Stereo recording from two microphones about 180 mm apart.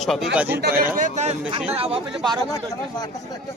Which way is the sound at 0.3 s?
10° right (ahead or behind).